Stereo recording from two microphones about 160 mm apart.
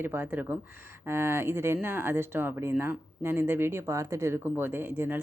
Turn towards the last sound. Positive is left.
turn(degrees=-15)  # may be behind; listen again after turning